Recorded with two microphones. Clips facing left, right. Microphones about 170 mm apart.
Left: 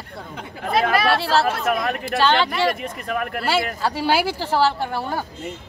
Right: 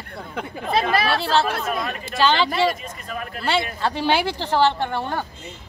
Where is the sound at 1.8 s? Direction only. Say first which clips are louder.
Left 5 dB; 65° left (ahead or behind).